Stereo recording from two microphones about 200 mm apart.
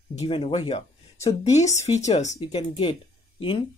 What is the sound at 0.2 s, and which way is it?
Speech, 30° left (ahead or behind).